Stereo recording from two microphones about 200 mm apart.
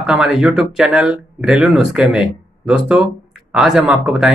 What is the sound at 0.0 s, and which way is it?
Speech, 5° right (ahead or behind).